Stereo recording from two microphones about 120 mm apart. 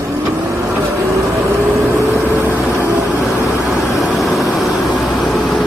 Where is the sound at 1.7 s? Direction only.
Centre (ahead or behind).